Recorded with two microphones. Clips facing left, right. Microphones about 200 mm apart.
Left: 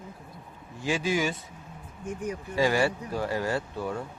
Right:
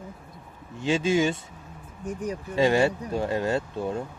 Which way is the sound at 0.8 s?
25° right (ahead or behind).